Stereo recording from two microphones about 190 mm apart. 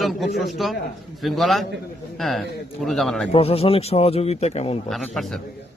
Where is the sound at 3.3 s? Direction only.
30° left (ahead or behind).